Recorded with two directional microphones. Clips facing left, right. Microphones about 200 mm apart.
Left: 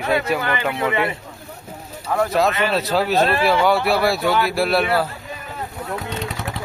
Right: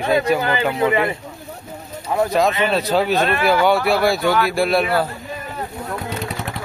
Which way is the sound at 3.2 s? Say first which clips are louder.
Right 1 dB; 30° left (ahead or behind).